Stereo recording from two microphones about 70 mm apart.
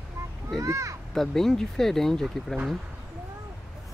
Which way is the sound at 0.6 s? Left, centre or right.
Right.